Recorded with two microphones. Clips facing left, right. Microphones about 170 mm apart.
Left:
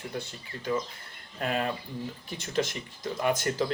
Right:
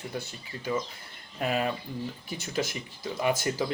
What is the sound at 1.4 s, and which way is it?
Speech, 5° right (ahead or behind).